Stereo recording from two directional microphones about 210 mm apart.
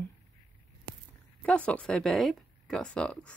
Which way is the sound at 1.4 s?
5° left (ahead or behind).